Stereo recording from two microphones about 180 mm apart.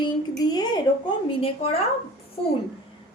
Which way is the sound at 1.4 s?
35° left (ahead or behind).